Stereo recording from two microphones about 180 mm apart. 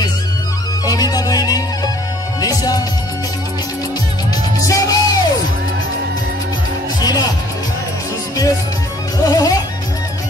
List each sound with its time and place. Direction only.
0.8 s music: 20° left (ahead or behind)
4.6 s music: 20° left (ahead or behind)
7.0 s music: 20° left (ahead or behind)
9.2 s music: 20° left (ahead or behind)